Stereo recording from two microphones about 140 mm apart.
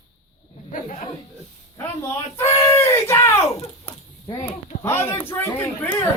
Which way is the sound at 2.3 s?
20° left (ahead or behind).